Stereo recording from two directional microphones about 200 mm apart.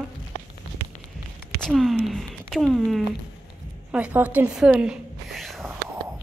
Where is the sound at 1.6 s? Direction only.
Centre (ahead or behind).